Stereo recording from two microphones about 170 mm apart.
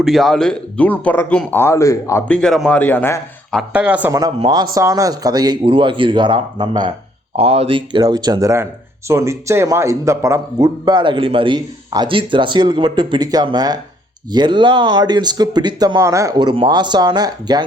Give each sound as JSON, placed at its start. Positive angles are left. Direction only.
{"t": 0.0, "sound": "speech", "side_deg": 0}
{"t": 2.2, "sound": "speech", "side_deg": 5}
{"t": 3.5, "sound": "speech", "side_deg": -5}
{"t": 4.4, "sound": "speech", "side_deg": -25}